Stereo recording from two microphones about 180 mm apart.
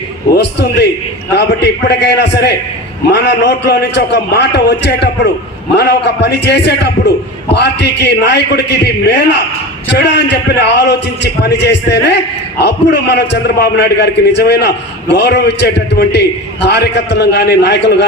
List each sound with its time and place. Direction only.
0.3 s a man's voice: 65° left (ahead or behind)